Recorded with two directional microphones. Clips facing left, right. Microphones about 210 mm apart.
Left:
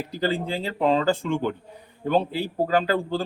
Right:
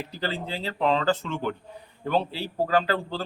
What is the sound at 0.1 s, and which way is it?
A man's voice, 15° left (ahead or behind).